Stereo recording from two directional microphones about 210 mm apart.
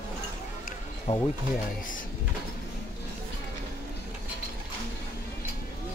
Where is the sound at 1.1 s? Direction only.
30° left (ahead or behind).